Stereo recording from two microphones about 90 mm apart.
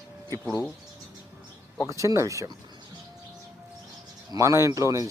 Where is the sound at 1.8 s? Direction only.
35° right (ahead or behind).